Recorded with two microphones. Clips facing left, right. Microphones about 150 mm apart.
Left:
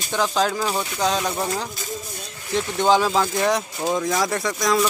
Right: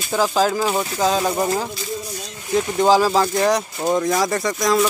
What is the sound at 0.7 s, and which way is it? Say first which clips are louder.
Speech: right 4 dB; 35° right (ahead or behind).